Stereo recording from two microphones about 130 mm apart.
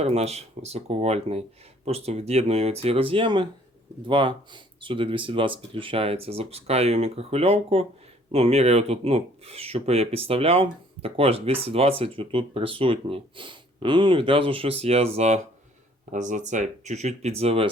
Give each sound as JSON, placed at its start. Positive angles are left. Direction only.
{"t": 0.0, "sound": "speech", "side_deg": -55}
{"t": 16.1, "sound": "speech", "side_deg": -70}